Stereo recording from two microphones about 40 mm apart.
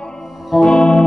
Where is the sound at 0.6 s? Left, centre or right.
Left.